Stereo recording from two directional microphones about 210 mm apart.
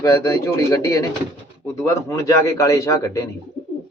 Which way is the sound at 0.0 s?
15° left (ahead or behind).